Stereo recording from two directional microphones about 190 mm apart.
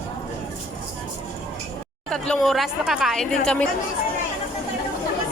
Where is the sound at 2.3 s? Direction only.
Centre (ahead or behind).